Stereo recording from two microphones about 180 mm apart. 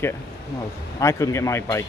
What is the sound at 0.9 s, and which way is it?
Speech, 15° left (ahead or behind).